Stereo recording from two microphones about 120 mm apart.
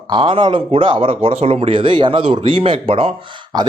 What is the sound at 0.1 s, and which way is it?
Speech, 45° right (ahead or behind).